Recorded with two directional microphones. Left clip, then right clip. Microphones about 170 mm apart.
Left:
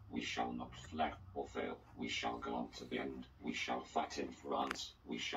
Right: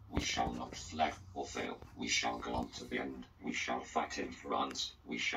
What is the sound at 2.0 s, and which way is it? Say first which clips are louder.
Speech: right 6 dB; 20° right (ahead or behind).